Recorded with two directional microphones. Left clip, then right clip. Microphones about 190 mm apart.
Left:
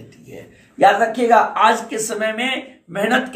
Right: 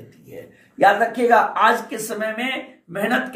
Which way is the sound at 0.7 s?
Centre (ahead or behind).